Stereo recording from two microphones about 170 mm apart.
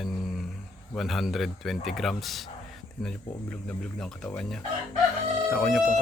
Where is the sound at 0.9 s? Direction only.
Centre (ahead or behind).